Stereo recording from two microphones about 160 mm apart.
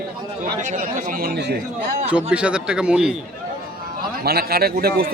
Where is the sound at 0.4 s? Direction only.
55° right (ahead or behind); by 1.6 s 80° right.